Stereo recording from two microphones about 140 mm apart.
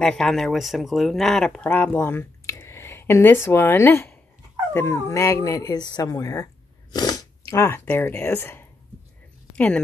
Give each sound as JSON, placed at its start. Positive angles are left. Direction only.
{"t": 0.0, "sound": "speech", "side_deg": 5}